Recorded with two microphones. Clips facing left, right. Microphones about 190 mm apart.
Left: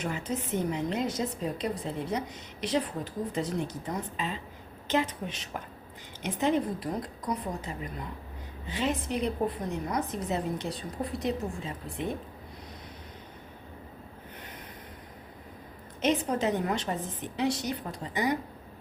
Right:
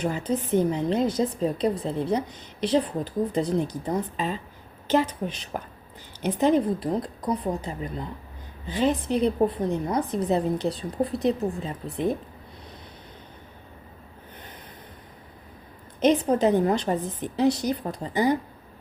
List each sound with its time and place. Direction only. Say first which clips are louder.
0.0 s a woman's voice: right 6 dB; 35° right (ahead or behind)
16.0 s a woman's voice: right 7 dB; 35° right (ahead or behind)